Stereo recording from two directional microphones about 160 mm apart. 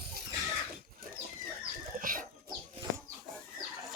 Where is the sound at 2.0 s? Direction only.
60° right (ahead or behind).